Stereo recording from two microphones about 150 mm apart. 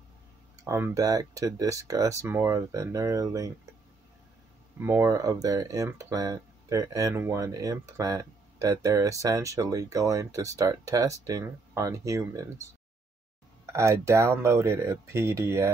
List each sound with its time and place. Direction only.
0.7 s speech: 20° right (ahead or behind)
4.7 s speech: 15° right (ahead or behind)
13.7 s speech: 20° right (ahead or behind)